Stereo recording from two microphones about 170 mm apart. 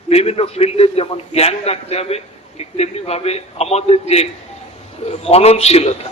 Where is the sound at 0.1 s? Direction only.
35° left (ahead or behind).